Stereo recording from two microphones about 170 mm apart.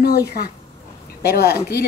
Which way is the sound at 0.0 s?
65° left (ahead or behind).